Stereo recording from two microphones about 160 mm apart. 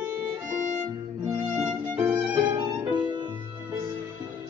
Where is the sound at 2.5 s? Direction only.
25° right (ahead or behind).